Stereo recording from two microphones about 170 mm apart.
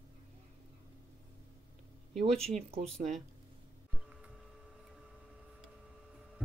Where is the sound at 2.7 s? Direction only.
40° right (ahead or behind).